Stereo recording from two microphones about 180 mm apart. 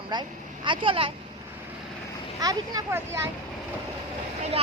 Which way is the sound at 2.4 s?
20° right (ahead or behind).